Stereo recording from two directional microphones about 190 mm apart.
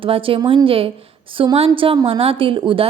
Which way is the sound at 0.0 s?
30° right (ahead or behind).